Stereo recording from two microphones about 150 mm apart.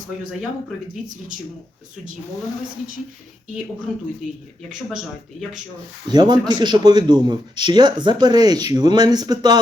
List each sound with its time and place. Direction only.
6.1 s a man's voice: 30° right (ahead or behind)